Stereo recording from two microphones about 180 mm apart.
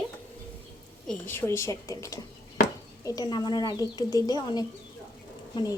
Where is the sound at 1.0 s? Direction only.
10° left (ahead or behind).